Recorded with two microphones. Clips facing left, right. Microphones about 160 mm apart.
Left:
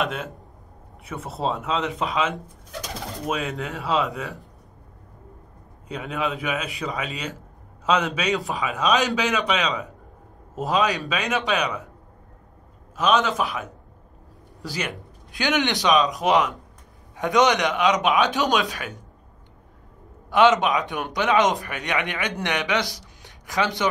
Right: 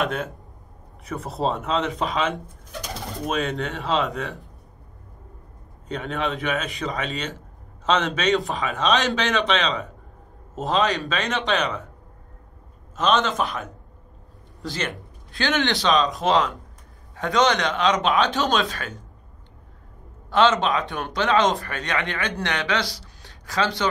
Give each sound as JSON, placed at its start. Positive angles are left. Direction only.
{"t": 0.0, "sound": "a man's voice", "side_deg": 0}
{"t": 5.9, "sound": "a man's voice", "side_deg": 5}
{"t": 12.9, "sound": "a man's voice", "side_deg": 5}
{"t": 14.7, "sound": "a man's voice", "side_deg": 10}
{"t": 20.2, "sound": "a man's voice", "side_deg": 15}